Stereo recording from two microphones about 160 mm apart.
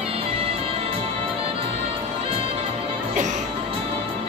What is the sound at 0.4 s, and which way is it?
Music, 35° right (ahead or behind).